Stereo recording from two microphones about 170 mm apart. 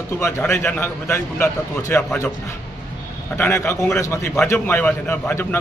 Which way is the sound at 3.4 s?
15° left (ahead or behind).